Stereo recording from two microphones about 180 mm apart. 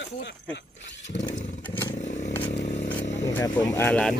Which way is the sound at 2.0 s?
40° left (ahead or behind).